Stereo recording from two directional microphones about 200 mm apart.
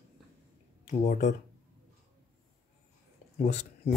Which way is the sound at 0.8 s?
40° left (ahead or behind).